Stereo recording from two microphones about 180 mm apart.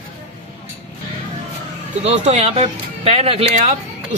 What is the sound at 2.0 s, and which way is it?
Speech, 40° right (ahead or behind).